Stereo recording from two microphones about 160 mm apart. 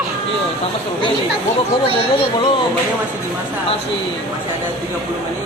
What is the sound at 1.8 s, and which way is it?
Speech, 35° left (ahead or behind).